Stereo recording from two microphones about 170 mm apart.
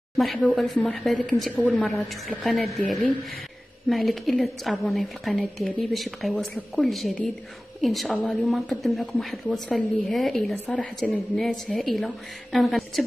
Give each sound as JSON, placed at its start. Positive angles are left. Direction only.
{"t": 0.2, "sound": "a woman's voice", "side_deg": 5}